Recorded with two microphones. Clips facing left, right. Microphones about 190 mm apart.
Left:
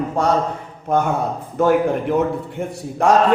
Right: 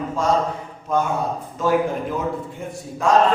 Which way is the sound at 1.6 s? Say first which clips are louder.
Left 5 dB; 60° left (ahead or behind).